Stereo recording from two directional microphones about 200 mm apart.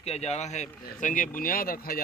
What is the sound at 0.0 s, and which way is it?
Speech, 30° left (ahead or behind).